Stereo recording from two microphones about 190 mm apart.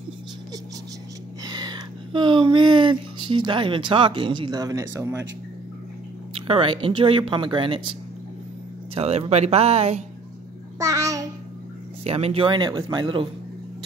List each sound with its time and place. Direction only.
1.4 s speech: 20° right (ahead or behind)
6.3 s speech: 30° right (ahead or behind)
8.9 s speech: 35° right (ahead or behind)
10.8 s child singing: 15° right (ahead or behind)
12.0 s speech: 30° right (ahead or behind)